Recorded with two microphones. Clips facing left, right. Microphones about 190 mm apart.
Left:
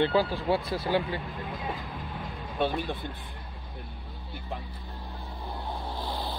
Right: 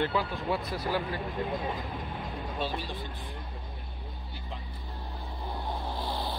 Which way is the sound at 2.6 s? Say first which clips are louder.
Left 7 dB; 55° left (ahead or behind).